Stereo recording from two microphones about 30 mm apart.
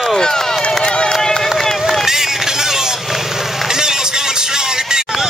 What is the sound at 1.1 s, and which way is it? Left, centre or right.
Run, centre.